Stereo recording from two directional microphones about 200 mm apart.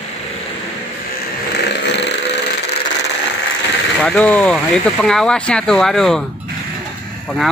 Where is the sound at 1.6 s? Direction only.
60° left (ahead or behind).